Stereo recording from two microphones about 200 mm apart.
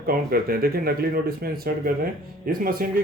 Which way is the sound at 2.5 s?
45° right (ahead or behind).